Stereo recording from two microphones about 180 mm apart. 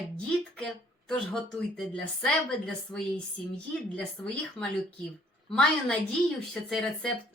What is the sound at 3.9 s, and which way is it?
Speech, 5° left (ahead or behind).